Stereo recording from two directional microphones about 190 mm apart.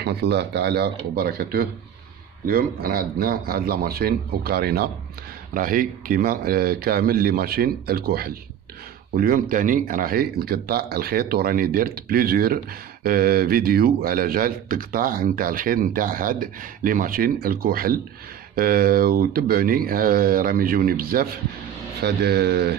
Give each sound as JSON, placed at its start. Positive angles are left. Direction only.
{"t": 0.0, "sound": "speech", "side_deg": -60}